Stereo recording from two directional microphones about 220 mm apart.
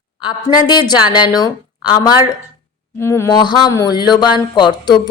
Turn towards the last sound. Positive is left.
turn(degrees=20)  # may be behind; listen again after turning